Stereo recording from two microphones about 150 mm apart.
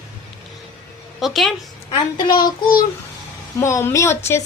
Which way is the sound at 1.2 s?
Centre (ahead or behind).